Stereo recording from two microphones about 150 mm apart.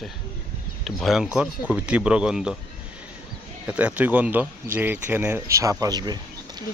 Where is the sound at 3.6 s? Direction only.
10° right (ahead or behind).